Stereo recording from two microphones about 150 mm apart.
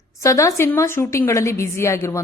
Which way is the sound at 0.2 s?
20° left (ahead or behind).